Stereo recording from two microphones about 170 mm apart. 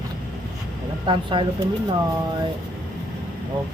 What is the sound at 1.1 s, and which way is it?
Speech, 30° right (ahead or behind).